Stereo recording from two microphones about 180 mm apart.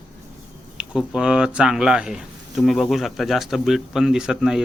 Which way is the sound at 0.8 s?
5° right (ahead or behind).